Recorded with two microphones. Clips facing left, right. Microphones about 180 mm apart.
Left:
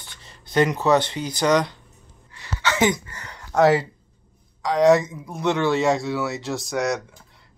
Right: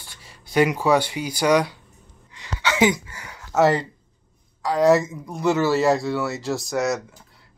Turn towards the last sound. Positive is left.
turn(degrees=0)  # may be behind; listen again after turning